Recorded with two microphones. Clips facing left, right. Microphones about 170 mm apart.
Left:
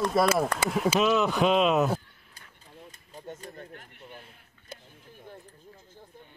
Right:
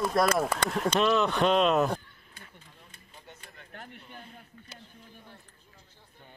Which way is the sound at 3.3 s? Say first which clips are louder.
Left 11 dB; 40° left (ahead or behind).